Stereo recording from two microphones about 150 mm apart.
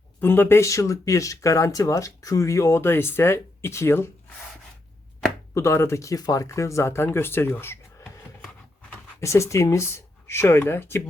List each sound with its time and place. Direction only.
0.2 s speech: 15° left (ahead or behind)
5.5 s speech: 15° left (ahead or behind)